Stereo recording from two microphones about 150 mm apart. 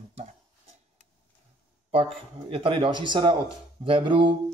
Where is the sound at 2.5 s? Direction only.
40° right (ahead or behind).